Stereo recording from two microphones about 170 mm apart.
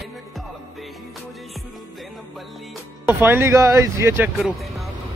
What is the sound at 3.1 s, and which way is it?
Speech, 10° right (ahead or behind).